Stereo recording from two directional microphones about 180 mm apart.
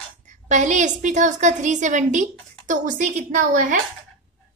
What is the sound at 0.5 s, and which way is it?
A woman's voice, 40° right (ahead or behind).